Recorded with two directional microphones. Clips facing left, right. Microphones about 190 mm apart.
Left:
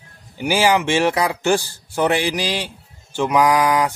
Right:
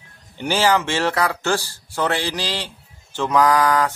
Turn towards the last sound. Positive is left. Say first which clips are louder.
# left 1 dB
turn(degrees=15)  # may be behind; listen again after turning